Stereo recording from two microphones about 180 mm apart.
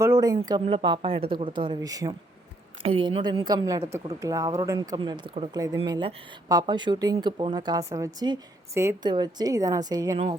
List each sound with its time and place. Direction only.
0.0 s speech: 20° right (ahead or behind)